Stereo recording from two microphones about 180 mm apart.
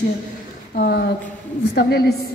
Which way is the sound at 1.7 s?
65° left (ahead or behind).